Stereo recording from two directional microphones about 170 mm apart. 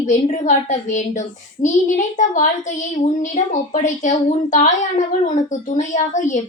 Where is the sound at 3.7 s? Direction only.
50° left (ahead or behind).